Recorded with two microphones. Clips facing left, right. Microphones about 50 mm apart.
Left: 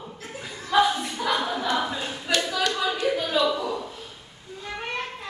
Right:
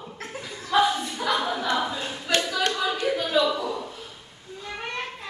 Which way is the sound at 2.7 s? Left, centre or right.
Centre.